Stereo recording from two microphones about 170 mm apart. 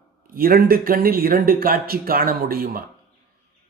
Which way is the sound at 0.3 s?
60° right (ahead or behind).